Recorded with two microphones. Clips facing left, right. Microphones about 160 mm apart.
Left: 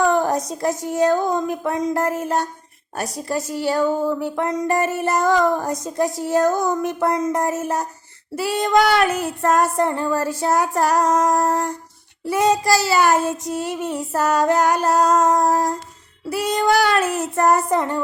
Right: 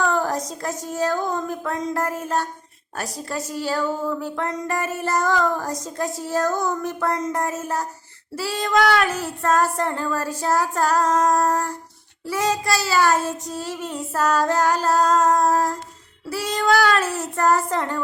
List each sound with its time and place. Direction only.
0.0 s a sound: 15° left (ahead or behind)
0.9 s speech: 20° left (ahead or behind)
3.7 s child singing: 20° left (ahead or behind)
4.4 s speech: 15° left (ahead or behind)
8.4 s child singing: 20° left (ahead or behind)
16.5 s speech: 20° left (ahead or behind)